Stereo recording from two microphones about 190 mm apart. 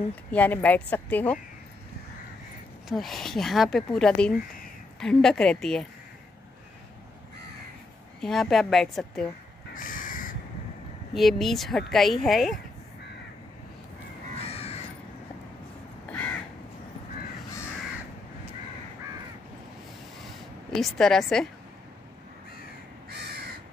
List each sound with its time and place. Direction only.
0.3 s speech: 10° left (ahead or behind)
2.9 s speech: centre (ahead or behind)
8.2 s speech: centre (ahead or behind)
9.8 s crow: 45° left (ahead or behind)
11.1 s speech: centre (ahead or behind)
14.4 s crow: 35° left (ahead or behind)
20.7 s speech: centre (ahead or behind)
23.0 s crow: 55° right (ahead or behind)